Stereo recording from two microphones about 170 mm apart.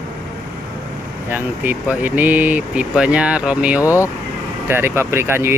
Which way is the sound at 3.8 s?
20° left (ahead or behind).